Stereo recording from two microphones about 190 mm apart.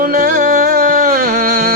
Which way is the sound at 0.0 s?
50° right (ahead or behind).